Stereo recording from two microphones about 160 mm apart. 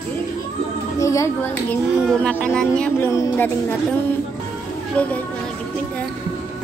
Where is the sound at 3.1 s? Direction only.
20° left (ahead or behind).